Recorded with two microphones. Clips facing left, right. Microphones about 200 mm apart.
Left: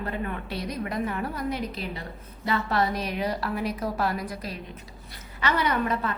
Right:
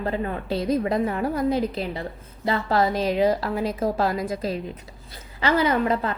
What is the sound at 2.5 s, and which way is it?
Speech, 25° right (ahead or behind).